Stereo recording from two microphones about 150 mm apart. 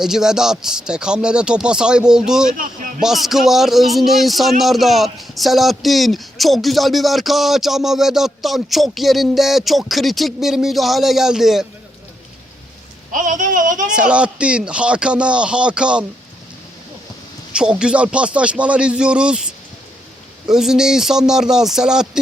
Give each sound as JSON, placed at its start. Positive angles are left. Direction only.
{"t": 0.0, "sound": "a man's voice", "side_deg": -5}
{"t": 13.1, "sound": "a sound", "side_deg": -60}
{"t": 13.9, "sound": "speech", "side_deg": -5}
{"t": 17.5, "sound": "speech", "side_deg": -5}
{"t": 20.5, "sound": "a man's voice", "side_deg": -5}